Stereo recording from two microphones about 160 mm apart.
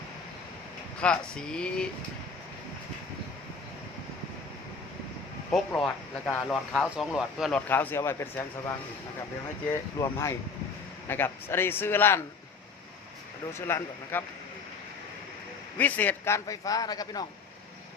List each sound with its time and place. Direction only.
1.0 s speech: 5° left (ahead or behind)
5.5 s speech: 5° left (ahead or behind)
7.7 s a man's voice: 10° left (ahead or behind)
10.0 s a man's voice: 20° left (ahead or behind)
13.5 s a man's voice: 15° left (ahead or behind)
15.8 s a man's voice: 10° left (ahead or behind)